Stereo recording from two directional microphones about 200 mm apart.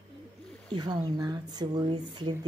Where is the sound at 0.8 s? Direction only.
20° right (ahead or behind).